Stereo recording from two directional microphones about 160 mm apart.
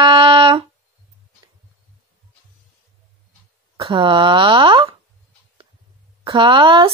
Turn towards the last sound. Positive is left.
turn(degrees=-30)  # may be behind; listen again after turning